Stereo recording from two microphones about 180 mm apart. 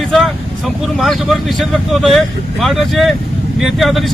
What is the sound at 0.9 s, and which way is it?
Speech, centre (ahead or behind).